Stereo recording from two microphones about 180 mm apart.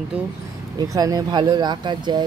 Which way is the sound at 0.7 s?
20° right (ahead or behind).